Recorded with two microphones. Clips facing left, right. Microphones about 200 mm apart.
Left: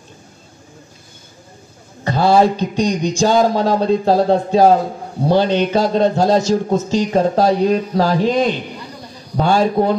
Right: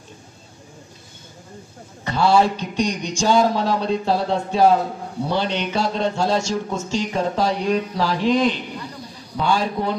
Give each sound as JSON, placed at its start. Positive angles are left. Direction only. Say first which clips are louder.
{"t": 2.0, "sound": "a man's voice", "louder": "left 4 dB", "side_deg": 40}